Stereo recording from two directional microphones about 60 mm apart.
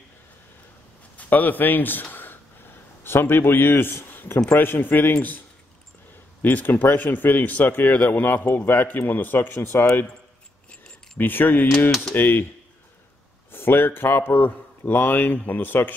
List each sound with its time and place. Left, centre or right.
1.1 s a man's voice: left
6.4 s a man's voice: left
11.1 s a man's voice: left
13.5 s a man's voice: left